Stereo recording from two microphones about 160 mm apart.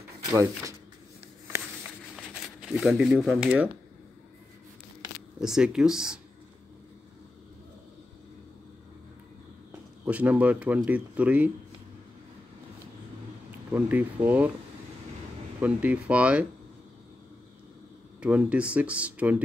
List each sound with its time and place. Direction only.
0.3 s speech: 20° right (ahead or behind)
2.1 s speech: centre (ahead or behind)
5.4 s speech: 5° right (ahead or behind)
10.0 s speech: 10° right (ahead or behind)
13.7 s speech: 10° right (ahead or behind)
15.6 s speech: 10° right (ahead or behind)
18.2 s speech: 10° right (ahead or behind)